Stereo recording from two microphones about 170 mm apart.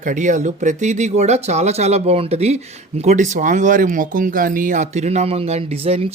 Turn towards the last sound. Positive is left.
turn(degrees=-35)  # may be behind; listen again after turning